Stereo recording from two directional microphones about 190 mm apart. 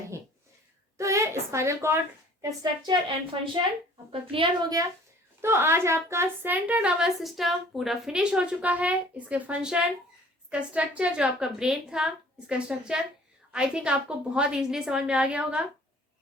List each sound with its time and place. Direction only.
0.9 s a woman's voice: 15° right (ahead or behind)
4.1 s a woman's voice: 30° right (ahead or behind)
5.4 s a woman's voice: 10° right (ahead or behind)